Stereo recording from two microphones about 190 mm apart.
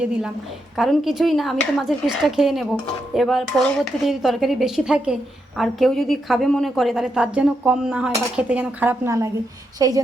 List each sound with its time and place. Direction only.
0.8 s a woman's voice: centre (ahead or behind); by 10.0 s 20° right (ahead or behind)